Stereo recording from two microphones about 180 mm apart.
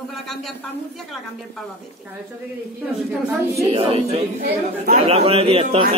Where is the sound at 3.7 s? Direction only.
30° right (ahead or behind).